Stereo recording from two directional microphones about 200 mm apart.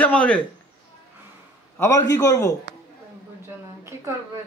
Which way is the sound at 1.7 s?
15° left (ahead or behind).